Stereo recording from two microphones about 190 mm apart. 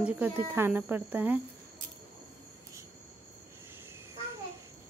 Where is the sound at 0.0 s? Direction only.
10° right (ahead or behind).